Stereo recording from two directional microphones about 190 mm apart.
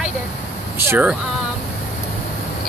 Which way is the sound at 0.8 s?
10° right (ahead or behind).